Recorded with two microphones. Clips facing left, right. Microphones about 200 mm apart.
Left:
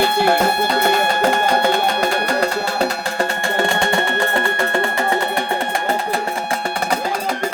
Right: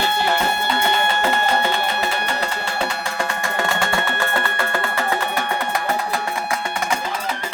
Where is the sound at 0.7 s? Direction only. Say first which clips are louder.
Left 4 dB; 40° left (ahead or behind); by 5.0 s 25° left (ahead or behind).